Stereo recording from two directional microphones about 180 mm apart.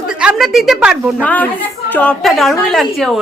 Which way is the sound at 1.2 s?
10° left (ahead or behind).